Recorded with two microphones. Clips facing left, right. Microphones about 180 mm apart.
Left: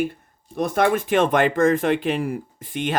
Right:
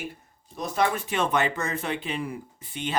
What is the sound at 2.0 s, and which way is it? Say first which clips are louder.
Speech: left 8 dB; 55° left (ahead or behind).